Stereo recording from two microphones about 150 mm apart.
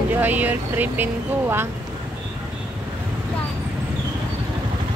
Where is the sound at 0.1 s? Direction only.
10° right (ahead or behind).